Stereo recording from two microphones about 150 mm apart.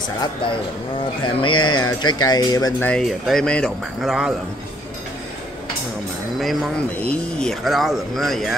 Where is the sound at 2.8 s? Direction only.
5° left (ahead or behind).